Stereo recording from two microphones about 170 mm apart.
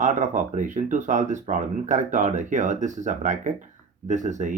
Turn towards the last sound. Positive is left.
turn(degrees=-45)  # may be behind; listen again after turning